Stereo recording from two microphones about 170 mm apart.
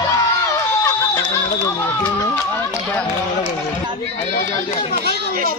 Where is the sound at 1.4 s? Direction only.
25° left (ahead or behind).